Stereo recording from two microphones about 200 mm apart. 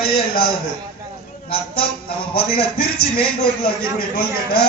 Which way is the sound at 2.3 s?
50° left (ahead or behind).